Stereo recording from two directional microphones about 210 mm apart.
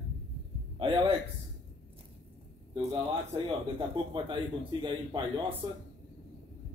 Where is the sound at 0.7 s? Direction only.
25° right (ahead or behind).